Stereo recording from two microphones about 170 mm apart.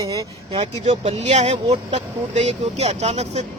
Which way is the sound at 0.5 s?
40° right (ahead or behind).